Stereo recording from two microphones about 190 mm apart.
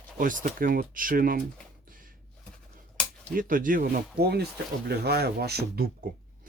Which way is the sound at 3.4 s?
45° right (ahead or behind).